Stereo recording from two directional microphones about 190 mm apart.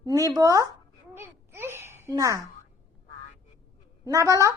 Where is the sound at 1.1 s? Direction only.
15° right (ahead or behind).